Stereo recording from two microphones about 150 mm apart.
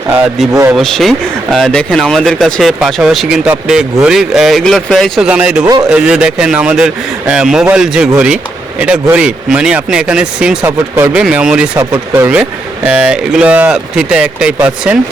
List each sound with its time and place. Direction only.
0.8 s speech: centre (ahead or behind)
5.6 s speech: 25° right (ahead or behind)
5.9 s speech: 5° right (ahead or behind)
11.8 s speech: 15° right (ahead or behind)